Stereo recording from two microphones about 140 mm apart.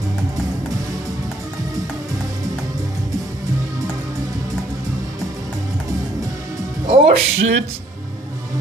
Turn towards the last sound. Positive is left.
turn(degrees=-45)  # may be behind; listen again after turning